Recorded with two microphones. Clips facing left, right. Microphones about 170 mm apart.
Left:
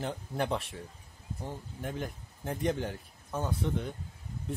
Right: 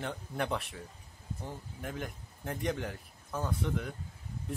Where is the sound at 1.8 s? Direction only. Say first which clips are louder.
Left 3 dB; 30° left (ahead or behind).